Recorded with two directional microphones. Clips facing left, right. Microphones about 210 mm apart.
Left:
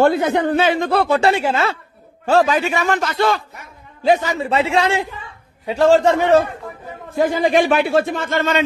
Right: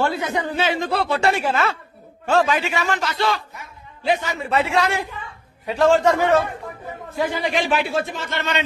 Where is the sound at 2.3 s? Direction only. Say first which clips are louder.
Left 4 dB; 40° left (ahead or behind).